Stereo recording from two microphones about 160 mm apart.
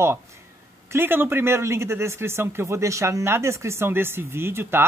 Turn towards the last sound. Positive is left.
turn(degrees=-15)  # may be behind; listen again after turning